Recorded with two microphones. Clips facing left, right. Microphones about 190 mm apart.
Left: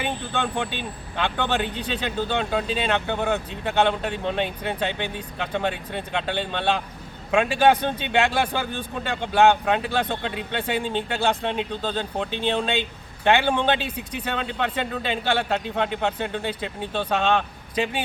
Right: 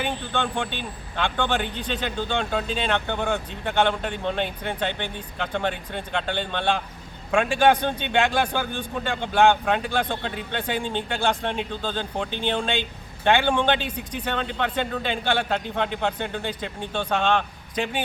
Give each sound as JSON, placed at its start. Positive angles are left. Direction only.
{"t": 0.0, "sound": "speech", "side_deg": 5}